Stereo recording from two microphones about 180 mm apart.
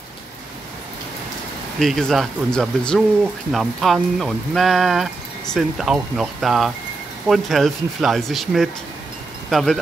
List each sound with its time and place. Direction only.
1.8 s speech: centre (ahead or behind)